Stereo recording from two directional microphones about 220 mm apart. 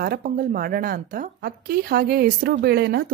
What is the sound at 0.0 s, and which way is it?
Speech, 40° right (ahead or behind).